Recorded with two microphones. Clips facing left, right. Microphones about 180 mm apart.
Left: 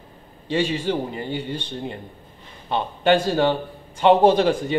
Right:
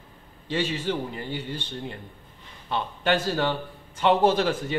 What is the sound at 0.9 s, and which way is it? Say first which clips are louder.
Speech: left 5 dB; 25° left (ahead or behind).